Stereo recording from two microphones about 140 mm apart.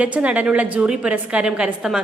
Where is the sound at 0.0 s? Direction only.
10° right (ahead or behind).